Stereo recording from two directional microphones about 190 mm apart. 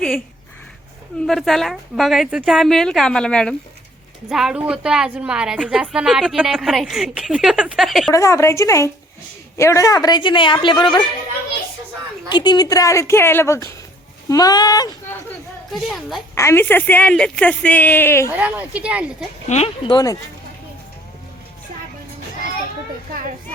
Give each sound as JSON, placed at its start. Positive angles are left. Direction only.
{"t": 1.3, "sound": "a woman's voice", "side_deg": 0}
{"t": 8.1, "sound": "a woman's voice", "side_deg": 15}
{"t": 12.3, "sound": "a woman's voice", "side_deg": 20}
{"t": 15.9, "sound": "a woman's voice", "side_deg": 0}
{"t": 16.3, "sound": "a woman's voice", "side_deg": 15}
{"t": 18.3, "sound": "a woman's voice", "side_deg": -10}
{"t": 19.5, "sound": "a woman's voice", "side_deg": 35}